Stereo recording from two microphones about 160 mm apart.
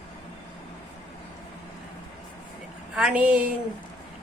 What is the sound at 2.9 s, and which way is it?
Speech, 5° right (ahead or behind).